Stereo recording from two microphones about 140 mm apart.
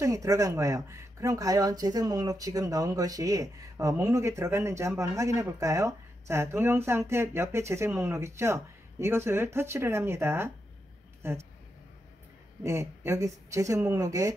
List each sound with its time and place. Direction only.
0.0 s speech: 25° right (ahead or behind)
12.6 s speech: 20° right (ahead or behind)